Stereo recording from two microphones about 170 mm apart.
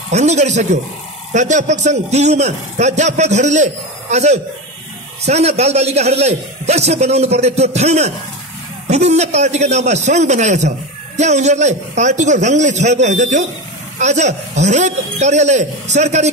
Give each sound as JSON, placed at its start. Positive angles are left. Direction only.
{"t": 0.1, "sound": "a man's voice", "side_deg": -40}